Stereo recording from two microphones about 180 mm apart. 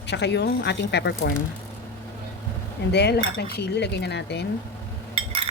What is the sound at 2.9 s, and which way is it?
Speech, 65° left (ahead or behind).